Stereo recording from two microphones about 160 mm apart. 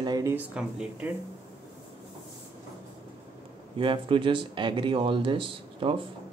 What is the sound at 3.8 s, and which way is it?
Speech, 30° right (ahead or behind).